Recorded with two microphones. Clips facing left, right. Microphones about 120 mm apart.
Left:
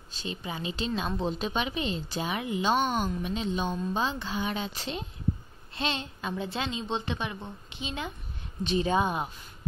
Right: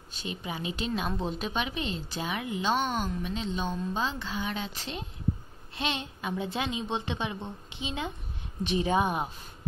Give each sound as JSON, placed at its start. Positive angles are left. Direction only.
{"t": 0.2, "sound": "a woman's voice", "side_deg": -10}
{"t": 5.8, "sound": "a woman's voice", "side_deg": -10}